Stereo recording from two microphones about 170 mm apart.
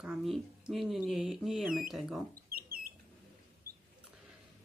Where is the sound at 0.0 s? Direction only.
Centre (ahead or behind).